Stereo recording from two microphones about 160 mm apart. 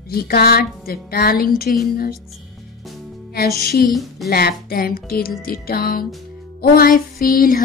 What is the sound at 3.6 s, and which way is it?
Speech, 85° left.